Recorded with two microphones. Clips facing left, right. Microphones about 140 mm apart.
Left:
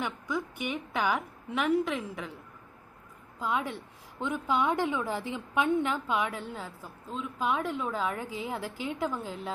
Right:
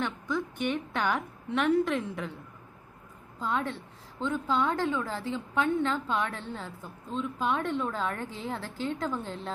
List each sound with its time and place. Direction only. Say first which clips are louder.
0.0 s a woman's voice: right 2 dB; 5° left (ahead or behind)
3.4 s a woman's voice: even; 5° left (ahead or behind)